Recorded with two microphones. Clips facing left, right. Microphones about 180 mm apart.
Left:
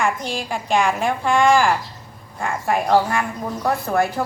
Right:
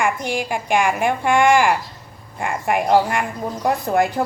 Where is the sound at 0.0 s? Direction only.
15° right (ahead or behind).